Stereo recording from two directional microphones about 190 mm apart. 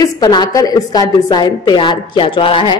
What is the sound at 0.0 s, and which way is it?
A woman's voice, 20° left (ahead or behind).